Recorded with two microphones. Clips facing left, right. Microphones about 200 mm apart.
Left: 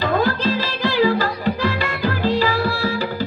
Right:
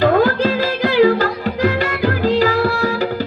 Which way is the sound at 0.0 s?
50° right (ahead or behind).